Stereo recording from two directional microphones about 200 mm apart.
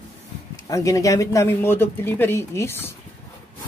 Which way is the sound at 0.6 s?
15° left (ahead or behind).